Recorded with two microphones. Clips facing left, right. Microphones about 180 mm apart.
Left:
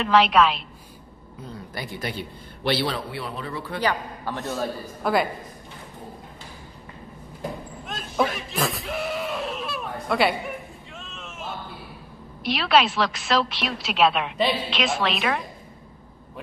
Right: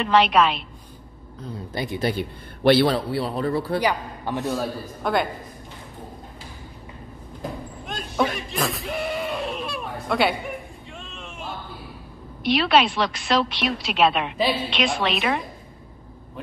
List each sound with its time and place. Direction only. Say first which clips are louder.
0.0 s a woman's voice: even; centre (ahead or behind)
1.7 s a man's voice: right 8 dB; 25° right (ahead or behind)
2.1 s a man's voice: right 5 dB; 55° right (ahead or behind)
3.1 s speech: right 8 dB; 35° right (ahead or behind)
3.8 s a man's voice: right 1 dB; 20° right (ahead or behind)
4.5 s a woman's voice: right 2 dB; centre (ahead or behind)
7.8 s a sound: right 1 dB; centre (ahead or behind)
12.4 s a woman's voice: right 2 dB; centre (ahead or behind)